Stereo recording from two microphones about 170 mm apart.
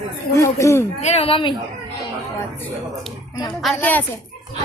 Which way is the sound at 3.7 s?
10° left (ahead or behind).